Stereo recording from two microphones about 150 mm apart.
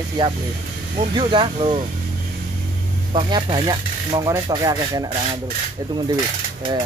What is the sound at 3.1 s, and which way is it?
Speech, 30° right (ahead or behind).